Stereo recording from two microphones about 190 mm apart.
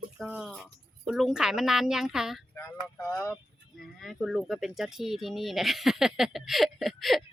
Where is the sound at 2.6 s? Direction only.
10° left (ahead or behind).